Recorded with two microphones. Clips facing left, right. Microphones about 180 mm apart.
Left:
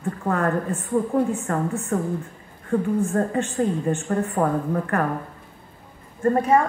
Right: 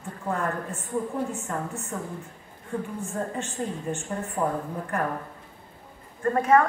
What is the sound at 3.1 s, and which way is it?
Speech, 70° left (ahead or behind).